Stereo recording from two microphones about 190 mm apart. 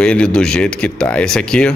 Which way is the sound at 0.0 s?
5° left (ahead or behind).